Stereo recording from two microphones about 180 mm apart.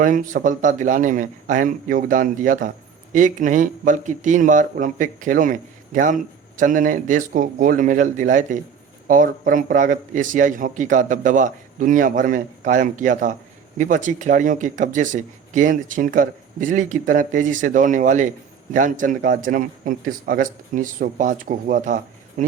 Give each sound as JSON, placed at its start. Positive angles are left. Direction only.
{"t": 0.0, "sound": "a man's voice", "side_deg": -50}